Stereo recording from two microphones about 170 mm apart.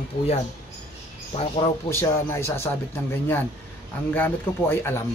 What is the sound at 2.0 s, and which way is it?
Speech, 15° left (ahead or behind).